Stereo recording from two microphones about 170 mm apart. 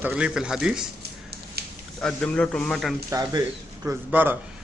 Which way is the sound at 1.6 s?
70° right (ahead or behind).